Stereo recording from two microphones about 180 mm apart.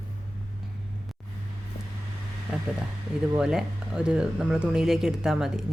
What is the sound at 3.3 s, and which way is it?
Speech, 5° right (ahead or behind).